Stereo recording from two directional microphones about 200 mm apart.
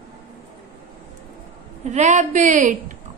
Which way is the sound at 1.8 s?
35° right (ahead or behind).